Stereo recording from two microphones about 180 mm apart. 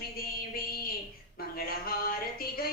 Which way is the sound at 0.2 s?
55° left (ahead or behind).